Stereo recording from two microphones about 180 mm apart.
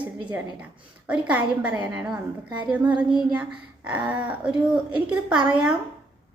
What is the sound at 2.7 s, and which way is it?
A woman's voice, 5° right (ahead or behind).